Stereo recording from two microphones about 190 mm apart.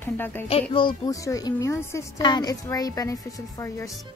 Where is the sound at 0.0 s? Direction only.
10° left (ahead or behind).